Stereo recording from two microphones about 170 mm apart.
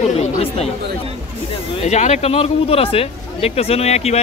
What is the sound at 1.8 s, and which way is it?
A man's voice, 40° left (ahead or behind).